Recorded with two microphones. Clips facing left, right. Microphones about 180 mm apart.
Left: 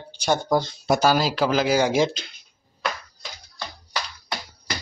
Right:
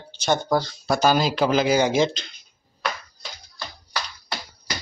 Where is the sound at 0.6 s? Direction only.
20° left (ahead or behind).